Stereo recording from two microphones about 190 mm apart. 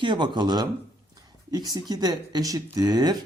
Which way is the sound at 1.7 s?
20° right (ahead or behind).